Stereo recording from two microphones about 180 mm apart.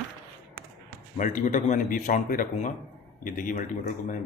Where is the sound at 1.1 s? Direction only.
45° left (ahead or behind).